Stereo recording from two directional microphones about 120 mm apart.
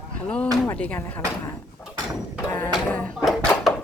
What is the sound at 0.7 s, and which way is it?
Speech, 10° left (ahead or behind).